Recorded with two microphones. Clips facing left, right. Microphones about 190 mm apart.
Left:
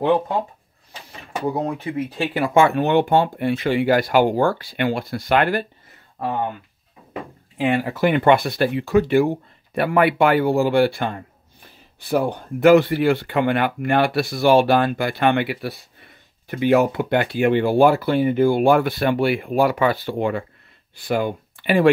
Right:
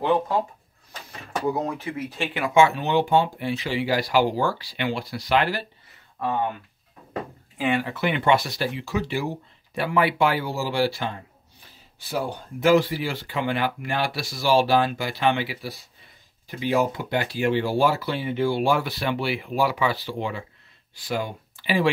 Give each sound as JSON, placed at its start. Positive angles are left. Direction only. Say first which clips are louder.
{"t": 2.1, "sound": "speech", "louder": "left 5 dB", "side_deg": 35}
{"t": 2.5, "sound": "speech", "louder": "left 3 dB", "side_deg": 55}
{"t": 6.1, "sound": "speech", "louder": "left 1 dB", "side_deg": 35}
{"t": 7.5, "sound": "speech", "louder": "left 4 dB", "side_deg": 35}